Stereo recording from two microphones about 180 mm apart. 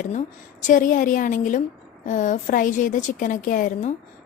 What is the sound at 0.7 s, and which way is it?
Speech, 45° left (ahead or behind).